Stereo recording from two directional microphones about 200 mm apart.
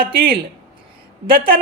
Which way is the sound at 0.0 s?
50° right (ahead or behind).